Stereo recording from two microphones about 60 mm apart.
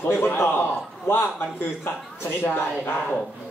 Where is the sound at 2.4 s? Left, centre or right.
Left.